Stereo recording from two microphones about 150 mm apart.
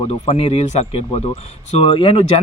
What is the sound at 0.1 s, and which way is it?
Speech, 40° left (ahead or behind).